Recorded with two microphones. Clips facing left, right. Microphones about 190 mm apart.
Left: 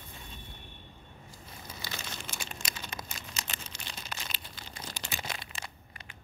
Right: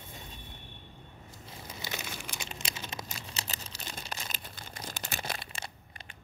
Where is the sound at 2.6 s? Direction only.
30° right (ahead or behind).